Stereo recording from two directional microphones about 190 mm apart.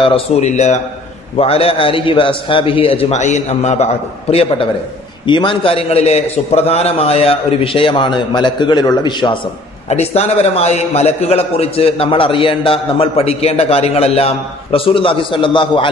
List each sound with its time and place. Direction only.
0.0 s a man's voice: 30° left (ahead or behind)
9.8 s a man's voice: 35° left (ahead or behind)